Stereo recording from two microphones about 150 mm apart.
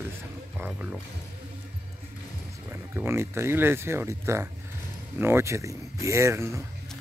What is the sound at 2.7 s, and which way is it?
Speech, 15° right (ahead or behind).